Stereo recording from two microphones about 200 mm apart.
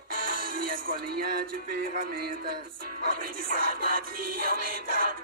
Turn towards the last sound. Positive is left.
turn(degrees=-45)  # may be behind; listen again after turning